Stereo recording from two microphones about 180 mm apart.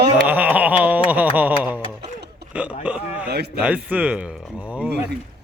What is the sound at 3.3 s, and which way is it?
Speech, 65° right (ahead or behind).